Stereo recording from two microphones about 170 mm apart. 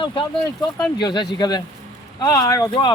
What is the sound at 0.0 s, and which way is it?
Speech, 30° left (ahead or behind).